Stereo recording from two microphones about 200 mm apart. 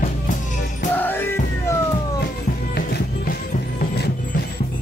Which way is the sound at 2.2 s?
55° left (ahead or behind).